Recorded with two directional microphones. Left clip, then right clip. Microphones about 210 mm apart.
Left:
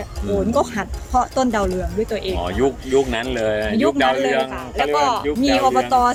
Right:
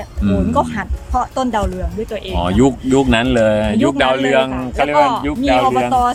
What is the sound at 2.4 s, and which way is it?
A man's voice, 55° right (ahead or behind).